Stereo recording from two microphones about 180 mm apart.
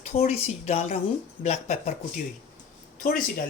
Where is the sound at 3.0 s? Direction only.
50° left (ahead or behind).